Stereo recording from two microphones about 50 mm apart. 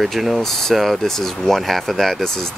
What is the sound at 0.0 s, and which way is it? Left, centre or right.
Speech, centre.